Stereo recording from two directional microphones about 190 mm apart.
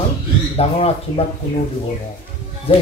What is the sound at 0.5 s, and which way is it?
Speech, 30° left (ahead or behind).